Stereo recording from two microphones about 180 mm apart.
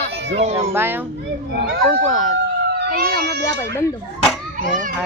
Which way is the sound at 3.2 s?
70° right (ahead or behind).